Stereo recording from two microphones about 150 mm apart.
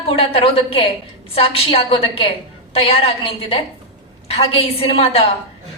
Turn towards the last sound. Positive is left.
turn(degrees=40)  # may be behind; listen again after turning